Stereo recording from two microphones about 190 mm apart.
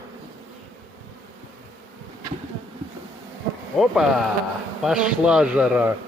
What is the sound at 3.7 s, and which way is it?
Speech, centre (ahead or behind).